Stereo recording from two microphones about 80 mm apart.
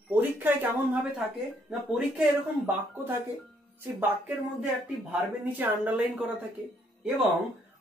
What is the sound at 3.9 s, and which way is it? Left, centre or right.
Speech, centre.